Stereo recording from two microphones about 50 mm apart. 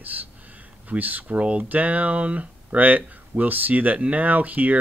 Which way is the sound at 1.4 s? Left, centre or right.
Right.